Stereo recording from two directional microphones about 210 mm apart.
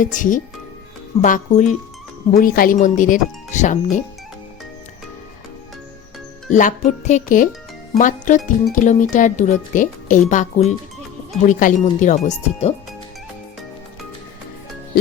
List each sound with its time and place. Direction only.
0.0 s speech: 40° left (ahead or behind)
6.5 s speech: 35° left (ahead or behind)